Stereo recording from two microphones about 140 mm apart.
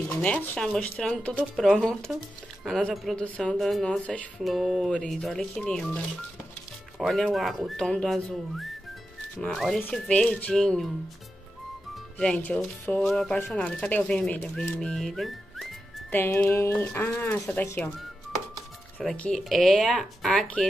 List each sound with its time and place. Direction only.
0.1 s speech: 10° left (ahead or behind)
11.9 s speech: 5° left (ahead or behind)
16.1 s speech: 15° left (ahead or behind)
18.9 s speech: 10° left (ahead or behind)